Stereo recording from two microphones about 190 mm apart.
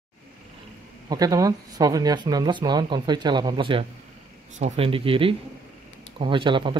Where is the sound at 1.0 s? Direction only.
20° right (ahead or behind).